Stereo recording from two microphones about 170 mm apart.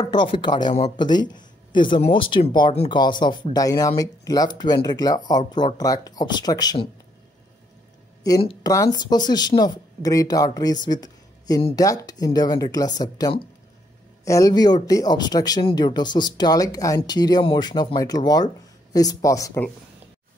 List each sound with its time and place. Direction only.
0.0 s speech: 25° left (ahead or behind)
8.6 s speech: 20° left (ahead or behind)